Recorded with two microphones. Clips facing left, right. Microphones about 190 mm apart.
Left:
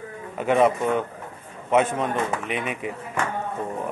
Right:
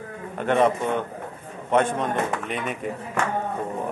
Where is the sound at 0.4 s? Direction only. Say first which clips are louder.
Left 1 dB; 5° left (ahead or behind).